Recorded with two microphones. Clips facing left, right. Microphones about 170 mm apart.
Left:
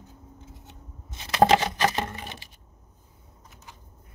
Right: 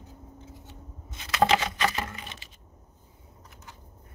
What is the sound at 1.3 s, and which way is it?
Patter, 40° left (ahead or behind).